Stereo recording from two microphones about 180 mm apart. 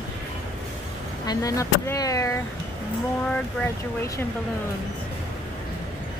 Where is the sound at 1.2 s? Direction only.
20° left (ahead or behind).